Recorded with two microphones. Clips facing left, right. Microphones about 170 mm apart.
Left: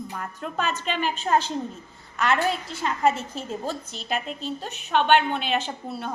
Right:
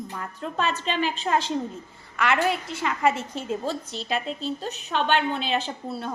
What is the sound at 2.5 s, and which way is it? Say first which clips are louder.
Speech: right 2 dB; 30° left (ahead or behind).